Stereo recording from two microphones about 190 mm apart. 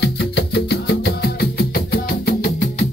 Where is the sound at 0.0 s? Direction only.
60° left (ahead or behind).